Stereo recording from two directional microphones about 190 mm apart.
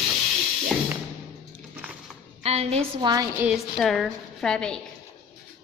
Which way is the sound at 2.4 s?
35° right (ahead or behind).